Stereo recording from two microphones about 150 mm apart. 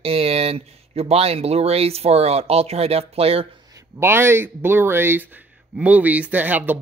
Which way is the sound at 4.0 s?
15° right (ahead or behind).